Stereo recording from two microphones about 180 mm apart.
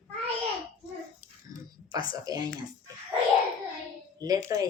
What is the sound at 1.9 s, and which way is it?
Speech, 20° right (ahead or behind).